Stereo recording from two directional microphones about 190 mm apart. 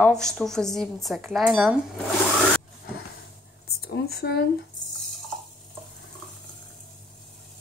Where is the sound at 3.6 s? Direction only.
55° left (ahead or behind).